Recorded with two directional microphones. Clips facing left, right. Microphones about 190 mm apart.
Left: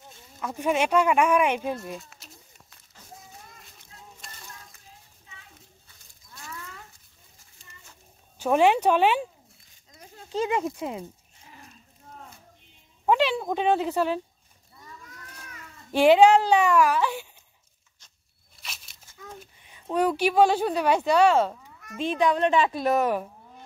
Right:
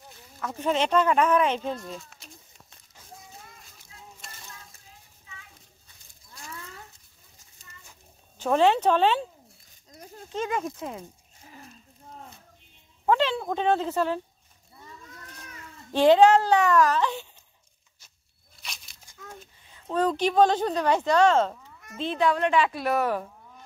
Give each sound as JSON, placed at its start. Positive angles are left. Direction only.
{"t": 0.5, "sound": "speech", "side_deg": 10}
{"t": 2.0, "sound": "a sound", "side_deg": 0}
{"t": 3.5, "sound": "a sound", "side_deg": 0}
{"t": 8.4, "sound": "speech", "side_deg": 10}
{"t": 10.3, "sound": "a woman's voice", "side_deg": 25}
{"t": 13.0, "sound": "speech", "side_deg": 15}
{"t": 15.9, "sound": "speech", "side_deg": 10}
{"t": 18.6, "sound": "a sound", "side_deg": 0}
{"t": 19.6, "sound": "speech", "side_deg": 15}
{"t": 22.2, "sound": "a woman's voice", "side_deg": 20}